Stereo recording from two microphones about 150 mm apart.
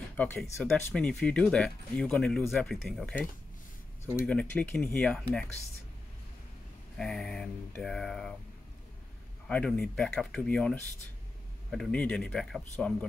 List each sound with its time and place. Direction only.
0.1 s speech: 10° left (ahead or behind)
4.3 s speech: 5° left (ahead or behind)
7.0 s speech: 5° left (ahead or behind)
9.5 s speech: 5° left (ahead or behind)